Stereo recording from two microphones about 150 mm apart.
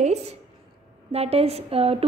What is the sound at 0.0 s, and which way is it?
A woman's voice, 45° right (ahead or behind).